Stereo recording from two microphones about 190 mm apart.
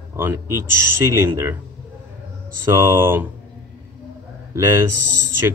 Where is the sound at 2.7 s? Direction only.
15° right (ahead or behind).